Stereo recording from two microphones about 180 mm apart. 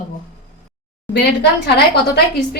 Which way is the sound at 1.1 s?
65° left (ahead or behind).